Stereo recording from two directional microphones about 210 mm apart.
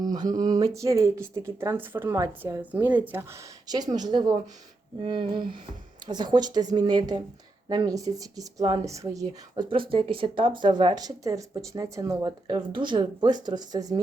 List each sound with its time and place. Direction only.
0.0 s speech: 20° right (ahead or behind)